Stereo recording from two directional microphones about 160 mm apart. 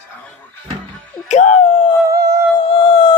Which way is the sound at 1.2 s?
45° left (ahead or behind).